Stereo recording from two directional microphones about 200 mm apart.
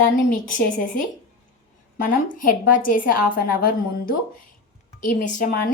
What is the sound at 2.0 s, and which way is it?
A woman's voice, 45° left (ahead or behind).